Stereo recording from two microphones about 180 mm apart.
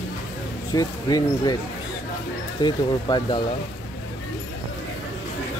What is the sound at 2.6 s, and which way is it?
Speech, 25° left (ahead or behind).